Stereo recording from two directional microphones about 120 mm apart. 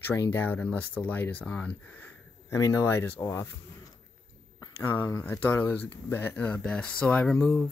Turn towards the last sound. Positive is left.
turn(degrees=10)  # may be behind; listen again after turning